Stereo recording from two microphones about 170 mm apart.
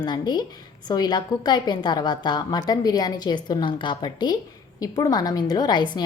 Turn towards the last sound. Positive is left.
turn(degrees=25)  # may be behind; listen again after turning